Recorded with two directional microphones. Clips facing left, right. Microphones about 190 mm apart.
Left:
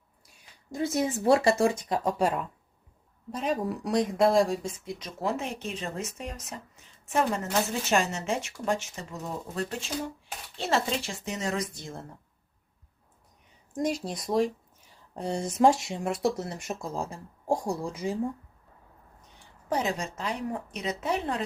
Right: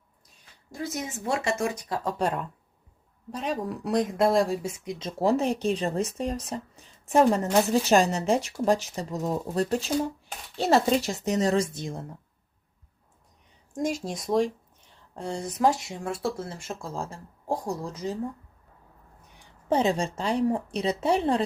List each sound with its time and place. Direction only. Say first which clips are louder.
0.7 s speech: left 6 dB; 25° left (ahead or behind)
2.0 s speech: even; 5° left (ahead or behind)
4.8 s speech: right 6 dB; 20° right (ahead or behind)
13.7 s speech: right 1 dB; centre (ahead or behind)
15.1 s speech: left 1 dB; 20° left (ahead or behind)
19.7 s speech: right 5 dB; 30° right (ahead or behind)